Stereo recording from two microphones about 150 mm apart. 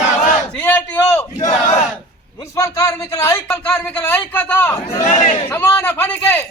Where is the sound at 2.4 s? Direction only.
20° left (ahead or behind).